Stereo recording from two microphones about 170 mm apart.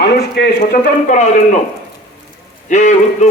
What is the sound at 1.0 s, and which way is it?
Speech, 45° left (ahead or behind).